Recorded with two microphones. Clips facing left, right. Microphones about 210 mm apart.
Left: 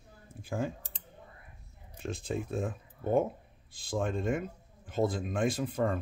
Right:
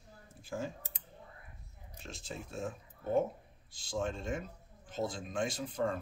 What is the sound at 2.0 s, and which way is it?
Speech, 55° left (ahead or behind).